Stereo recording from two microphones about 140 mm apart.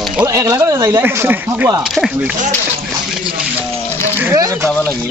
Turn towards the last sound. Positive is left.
turn(degrees=-25)  # may be behind; listen again after turning